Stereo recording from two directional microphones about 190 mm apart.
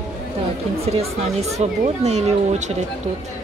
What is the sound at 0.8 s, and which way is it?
Speech, 35° right (ahead or behind).